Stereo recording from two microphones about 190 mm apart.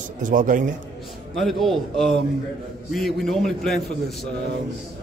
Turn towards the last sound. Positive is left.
turn(degrees=0)  # may be behind; listen again after turning